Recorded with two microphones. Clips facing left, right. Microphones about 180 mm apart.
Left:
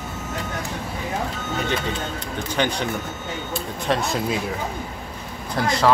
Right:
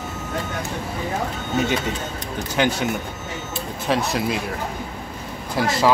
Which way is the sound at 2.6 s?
5° right (ahead or behind).